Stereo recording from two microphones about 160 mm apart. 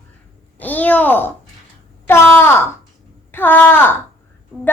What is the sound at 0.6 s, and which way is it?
A child's voice, 10° left (ahead or behind).